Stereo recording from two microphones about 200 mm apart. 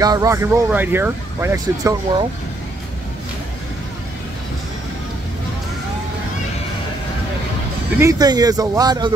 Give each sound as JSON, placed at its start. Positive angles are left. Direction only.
{"t": 0.0, "sound": "speech", "side_deg": -15}
{"t": 8.0, "sound": "speech", "side_deg": -20}